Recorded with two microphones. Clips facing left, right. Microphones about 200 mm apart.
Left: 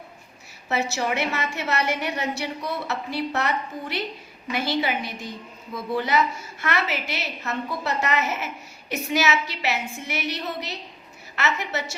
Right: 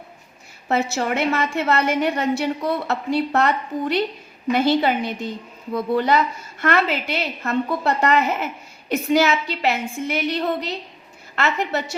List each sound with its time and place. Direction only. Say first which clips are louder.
0.7 s a woman's voice: right 4 dB; 55° right (ahead or behind)